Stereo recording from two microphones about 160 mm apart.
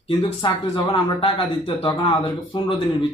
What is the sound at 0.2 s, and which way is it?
Speech, 30° left (ahead or behind).